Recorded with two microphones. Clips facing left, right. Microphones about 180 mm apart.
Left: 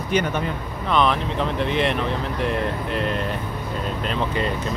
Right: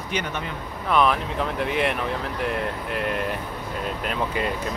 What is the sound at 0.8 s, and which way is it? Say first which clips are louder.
Speech: left 1 dB; 5° right (ahead or behind).